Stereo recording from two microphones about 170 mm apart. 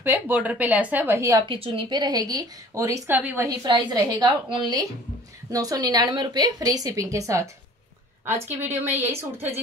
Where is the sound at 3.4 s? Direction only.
25° right (ahead or behind).